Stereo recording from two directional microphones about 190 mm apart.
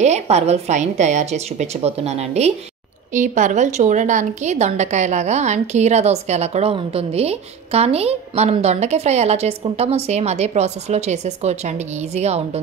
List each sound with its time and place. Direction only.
0.0 s a woman's voice: 35° right (ahead or behind)